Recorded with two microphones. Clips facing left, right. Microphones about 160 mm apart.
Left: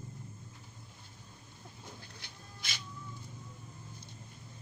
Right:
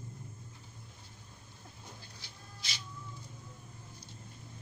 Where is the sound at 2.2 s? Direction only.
55° left (ahead or behind).